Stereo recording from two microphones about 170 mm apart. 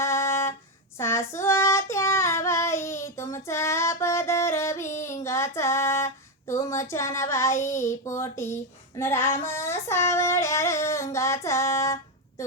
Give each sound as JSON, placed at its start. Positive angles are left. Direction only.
{"t": 0.0, "sound": "music", "side_deg": 15}
{"t": 0.9, "sound": "child singing", "side_deg": 15}
{"t": 6.5, "sound": "speech", "side_deg": 15}
{"t": 9.0, "sound": "child singing", "side_deg": 15}
{"t": 12.4, "sound": "speech", "side_deg": 20}